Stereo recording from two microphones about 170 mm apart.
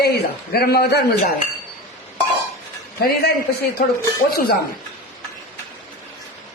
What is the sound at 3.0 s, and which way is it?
Speech, 70° left (ahead or behind).